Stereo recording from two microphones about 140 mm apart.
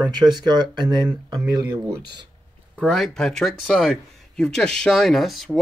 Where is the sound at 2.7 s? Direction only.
5° left (ahead or behind).